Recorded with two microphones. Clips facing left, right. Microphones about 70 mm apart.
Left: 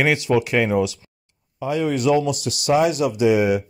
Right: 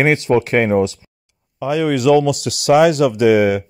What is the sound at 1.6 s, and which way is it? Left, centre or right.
Speech, right.